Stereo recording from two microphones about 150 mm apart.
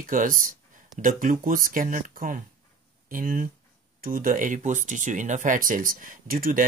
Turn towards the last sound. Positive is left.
turn(degrees=-70)  # may be behind; listen again after turning